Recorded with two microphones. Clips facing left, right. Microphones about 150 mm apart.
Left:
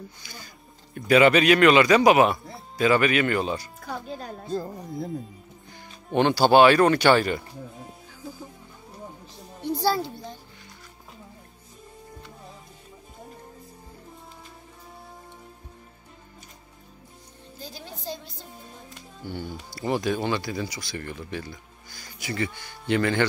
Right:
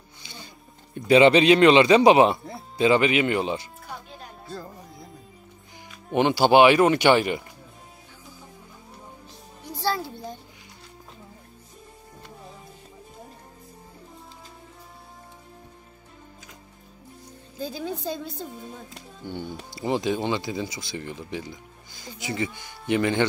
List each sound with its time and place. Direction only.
0.2 s music: 25° right (ahead or behind)
0.9 s speech: 25° right (ahead or behind)
3.8 s music: 40° left (ahead or behind)
6.1 s speech: 15° right (ahead or behind)
19.2 s speech: 20° right (ahead or behind)